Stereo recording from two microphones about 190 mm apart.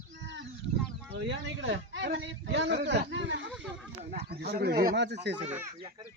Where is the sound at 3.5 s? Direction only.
5° right (ahead or behind).